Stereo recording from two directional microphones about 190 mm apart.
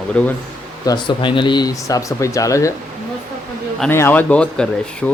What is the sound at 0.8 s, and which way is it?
Speech, 25° left (ahead or behind).